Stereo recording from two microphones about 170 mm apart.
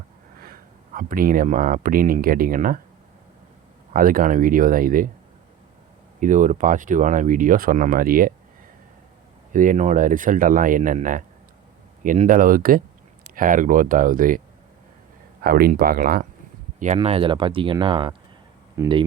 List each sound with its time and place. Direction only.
0.4 s speech: 55° right (ahead or behind)
3.9 s speech: 55° right (ahead or behind)
6.1 s speech: 45° right (ahead or behind)
9.5 s speech: 50° right (ahead or behind)
15.4 s speech: 60° right (ahead or behind)
16.8 s speech: 40° right (ahead or behind)
18.8 s speech: 15° right (ahead or behind)